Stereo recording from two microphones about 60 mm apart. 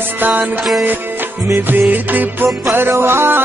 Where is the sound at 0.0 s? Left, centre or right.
Right.